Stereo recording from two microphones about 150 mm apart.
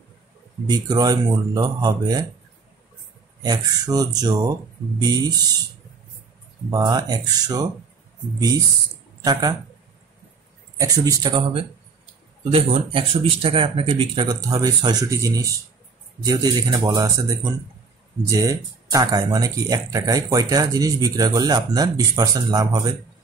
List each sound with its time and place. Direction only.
0.7 s speech: 25° right (ahead or behind)
3.4 s speech: 25° right (ahead or behind)
6.7 s speech: 25° right (ahead or behind)
9.2 s speech: 25° right (ahead or behind)
10.8 s speech: 25° right (ahead or behind)
12.4 s speech: 40° right (ahead or behind)